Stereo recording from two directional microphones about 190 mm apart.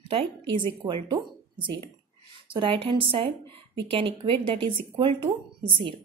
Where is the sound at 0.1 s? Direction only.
30° right (ahead or behind).